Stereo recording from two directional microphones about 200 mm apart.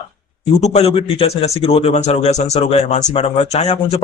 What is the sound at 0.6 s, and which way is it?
A man's voice, 30° left (ahead or behind).